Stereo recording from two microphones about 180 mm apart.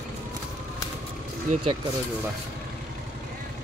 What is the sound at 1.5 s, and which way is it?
Speech, 45° right (ahead or behind).